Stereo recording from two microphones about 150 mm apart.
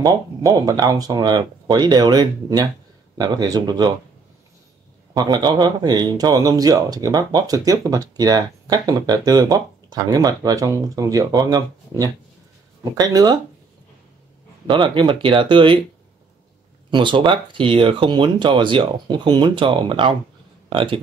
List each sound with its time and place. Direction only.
0.0 s speech: 25° right (ahead or behind)
5.1 s speech: 25° right (ahead or behind)
14.7 s speech: 35° right (ahead or behind)
16.9 s speech: 30° right (ahead or behind)